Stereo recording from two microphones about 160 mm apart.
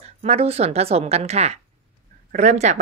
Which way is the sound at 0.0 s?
45° right (ahead or behind).